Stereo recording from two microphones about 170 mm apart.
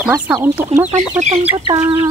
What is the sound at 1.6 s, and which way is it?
Bird, 20° right (ahead or behind).